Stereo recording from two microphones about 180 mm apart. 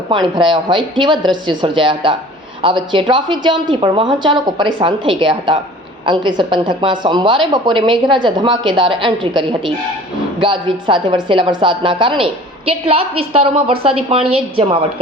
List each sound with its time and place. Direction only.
0.1 s a woman's voice: 25° right (ahead or behind)